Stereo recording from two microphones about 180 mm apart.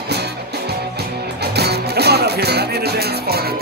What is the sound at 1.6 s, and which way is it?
Music, 65° right (ahead or behind).